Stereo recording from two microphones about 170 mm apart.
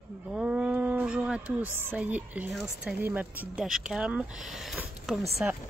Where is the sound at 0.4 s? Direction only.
5° right (ahead or behind).